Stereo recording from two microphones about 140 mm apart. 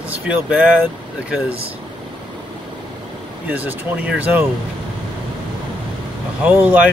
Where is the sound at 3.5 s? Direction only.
10° right (ahead or behind).